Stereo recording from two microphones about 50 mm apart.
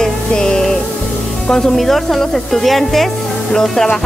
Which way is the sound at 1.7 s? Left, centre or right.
Centre.